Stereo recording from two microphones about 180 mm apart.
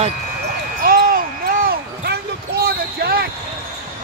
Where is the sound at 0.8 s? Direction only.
55° right (ahead or behind).